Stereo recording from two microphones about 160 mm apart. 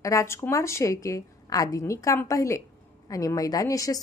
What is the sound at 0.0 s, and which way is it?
A woman's voice, 20° left (ahead or behind).